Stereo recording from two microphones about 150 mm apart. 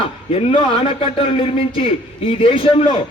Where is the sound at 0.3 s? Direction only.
40° left (ahead or behind).